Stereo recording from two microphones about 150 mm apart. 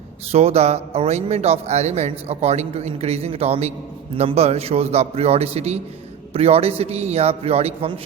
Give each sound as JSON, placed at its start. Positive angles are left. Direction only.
{"t": 0.3, "sound": "speech", "side_deg": -45}